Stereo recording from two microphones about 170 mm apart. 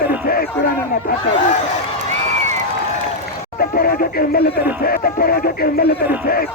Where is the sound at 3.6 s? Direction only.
60° left (ahead or behind).